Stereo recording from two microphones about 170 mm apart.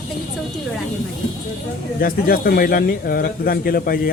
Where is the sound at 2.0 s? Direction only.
60° left (ahead or behind).